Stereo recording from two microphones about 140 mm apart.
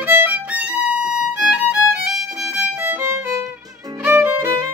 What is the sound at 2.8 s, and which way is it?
Violin, 15° right (ahead or behind).